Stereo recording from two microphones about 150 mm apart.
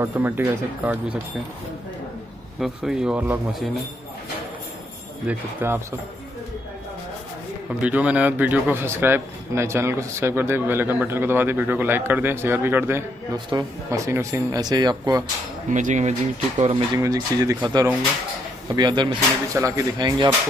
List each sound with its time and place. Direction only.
0.0 s a man's voice: 15° right (ahead or behind)
2.6 s speech: 5° right (ahead or behind)
5.2 s a man's voice: 10° right (ahead or behind)
7.8 s a man's voice: 10° right (ahead or behind); by 15.2 s 25° right (ahead or behind)
15.7 s speech: 55° right (ahead or behind)
16.9 s speech: 25° right (ahead or behind)
18.8 s speech: 30° right (ahead or behind)